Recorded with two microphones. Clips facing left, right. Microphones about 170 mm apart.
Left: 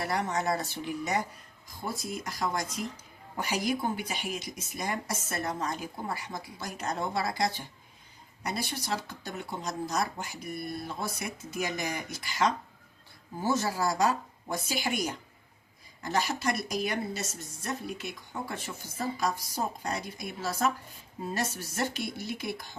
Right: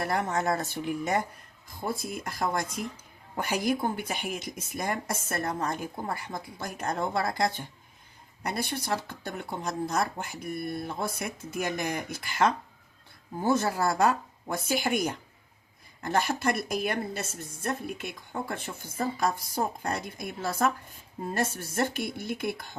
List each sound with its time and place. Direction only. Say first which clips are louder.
0.0 s a woman's voice: right 2 dB; 50° right (ahead or behind)